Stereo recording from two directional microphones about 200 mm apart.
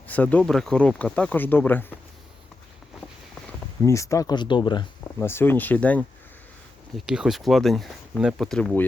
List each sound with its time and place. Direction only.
0.1 s speech: 5° left (ahead or behind)
3.8 s speech: 15° left (ahead or behind)
5.2 s speech: 10° left (ahead or behind)